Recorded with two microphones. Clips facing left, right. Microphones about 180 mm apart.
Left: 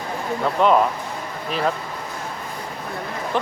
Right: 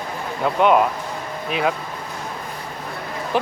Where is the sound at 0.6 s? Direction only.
5° right (ahead or behind).